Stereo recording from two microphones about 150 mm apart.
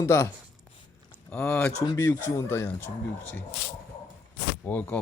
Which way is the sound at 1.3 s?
5° left (ahead or behind).